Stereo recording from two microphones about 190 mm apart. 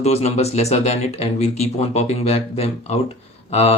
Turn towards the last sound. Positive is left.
turn(degrees=35)  # may be behind; listen again after turning